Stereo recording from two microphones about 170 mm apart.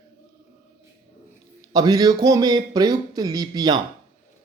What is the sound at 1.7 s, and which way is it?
Speech, 25° right (ahead or behind).